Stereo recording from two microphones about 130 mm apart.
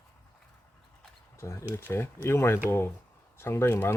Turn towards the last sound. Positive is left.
turn(degrees=20)  # may be behind; listen again after turning